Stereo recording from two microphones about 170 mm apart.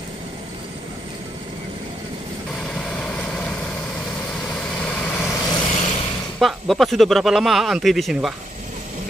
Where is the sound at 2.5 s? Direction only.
Centre (ahead or behind).